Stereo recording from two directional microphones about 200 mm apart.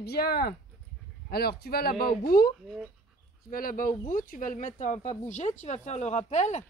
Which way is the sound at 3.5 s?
45° left (ahead or behind).